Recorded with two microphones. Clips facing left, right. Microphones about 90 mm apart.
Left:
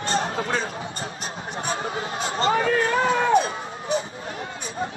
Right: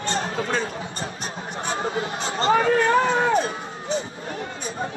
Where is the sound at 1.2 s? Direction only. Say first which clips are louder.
Left 1 dB; 30° right (ahead or behind).